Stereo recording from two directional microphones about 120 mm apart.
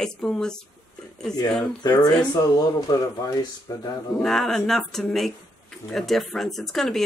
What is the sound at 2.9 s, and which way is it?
Speech, 30° left (ahead or behind).